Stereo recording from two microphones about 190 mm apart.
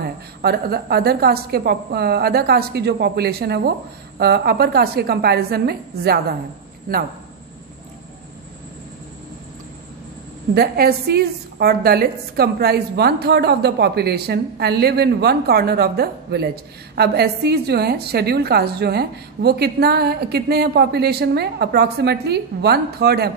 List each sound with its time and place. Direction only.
0.0 s a woman's voice: 55° right (ahead or behind)
10.5 s a woman's voice: 55° right (ahead or behind)